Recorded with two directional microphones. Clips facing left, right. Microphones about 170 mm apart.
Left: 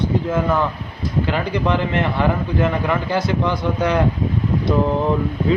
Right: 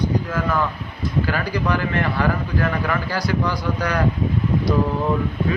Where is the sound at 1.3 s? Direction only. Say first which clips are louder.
Left 4 dB; 20° left (ahead or behind).